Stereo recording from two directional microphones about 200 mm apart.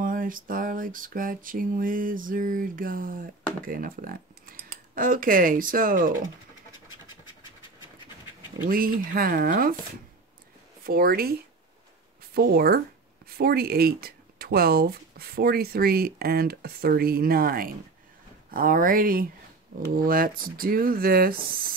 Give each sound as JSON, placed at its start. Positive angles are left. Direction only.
{"t": 0.0, "sound": "speech", "side_deg": -45}
{"t": 8.6, "sound": "speech", "side_deg": -45}
{"t": 10.8, "sound": "speech", "side_deg": -50}